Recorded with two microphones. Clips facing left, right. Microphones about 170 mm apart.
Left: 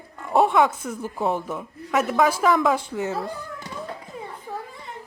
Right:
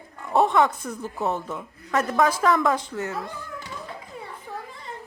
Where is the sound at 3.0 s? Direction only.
30° left (ahead or behind).